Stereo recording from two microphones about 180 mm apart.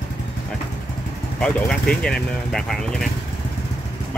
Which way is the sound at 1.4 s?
5° left (ahead or behind).